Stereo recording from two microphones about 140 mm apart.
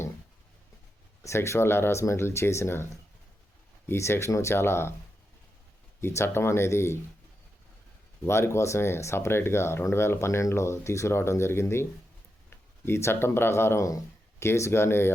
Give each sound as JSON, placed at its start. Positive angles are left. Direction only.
{"t": 1.2, "sound": "speech", "side_deg": 20}
{"t": 6.0, "sound": "speech", "side_deg": 15}
{"t": 8.3, "sound": "speech", "side_deg": 20}